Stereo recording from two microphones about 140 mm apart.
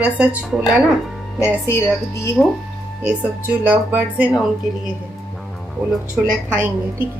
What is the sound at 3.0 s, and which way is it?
Speech, 10° right (ahead or behind).